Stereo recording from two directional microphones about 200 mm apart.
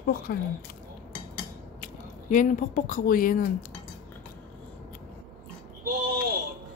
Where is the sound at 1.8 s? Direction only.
40° left (ahead or behind).